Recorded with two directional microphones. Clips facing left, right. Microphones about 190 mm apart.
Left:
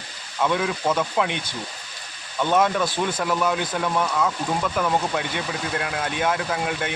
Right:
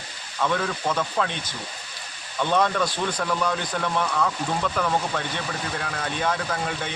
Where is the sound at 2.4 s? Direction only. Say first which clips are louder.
Left 2 dB; 10° left (ahead or behind).